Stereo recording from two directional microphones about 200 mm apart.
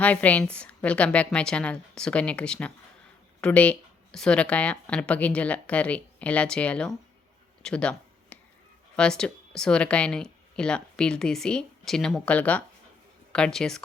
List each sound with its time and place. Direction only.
0.0 s speech: 5° left (ahead or behind)
7.6 s a sound: 5° left (ahead or behind)
9.0 s speech: 5° left (ahead or behind)